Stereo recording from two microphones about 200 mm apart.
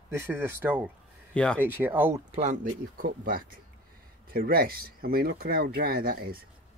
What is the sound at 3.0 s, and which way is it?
Speech, 45° right (ahead or behind).